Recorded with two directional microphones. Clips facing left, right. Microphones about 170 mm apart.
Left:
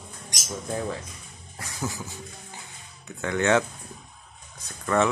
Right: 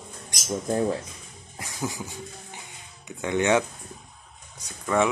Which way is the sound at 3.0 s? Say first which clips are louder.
Right 1 dB; 20° right (ahead or behind).